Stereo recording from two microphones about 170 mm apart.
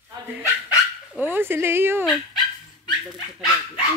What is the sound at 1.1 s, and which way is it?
Speech, 10° right (ahead or behind).